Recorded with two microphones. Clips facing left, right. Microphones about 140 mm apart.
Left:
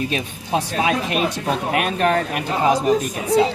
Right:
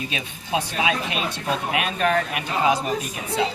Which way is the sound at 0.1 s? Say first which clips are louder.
Left 4 dB; 45° left (ahead or behind).